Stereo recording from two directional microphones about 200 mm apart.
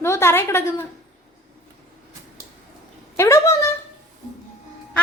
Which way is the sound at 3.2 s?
10° left (ahead or behind).